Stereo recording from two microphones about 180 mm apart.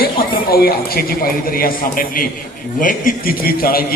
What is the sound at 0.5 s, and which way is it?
A man's voice, 60° left (ahead or behind).